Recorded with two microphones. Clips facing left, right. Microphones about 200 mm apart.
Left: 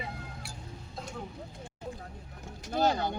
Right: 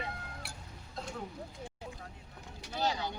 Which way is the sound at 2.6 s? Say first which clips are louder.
Left 6 dB; 50° left (ahead or behind).